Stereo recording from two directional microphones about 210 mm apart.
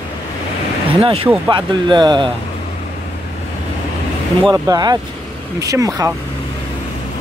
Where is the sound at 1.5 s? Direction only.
20° right (ahead or behind).